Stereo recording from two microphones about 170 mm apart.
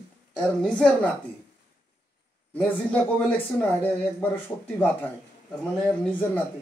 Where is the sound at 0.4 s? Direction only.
5° left (ahead or behind).